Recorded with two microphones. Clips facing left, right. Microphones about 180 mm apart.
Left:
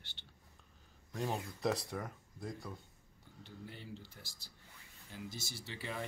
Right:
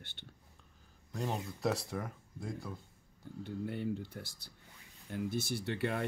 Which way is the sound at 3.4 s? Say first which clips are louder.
Right 13 dB; 55° right (ahead or behind).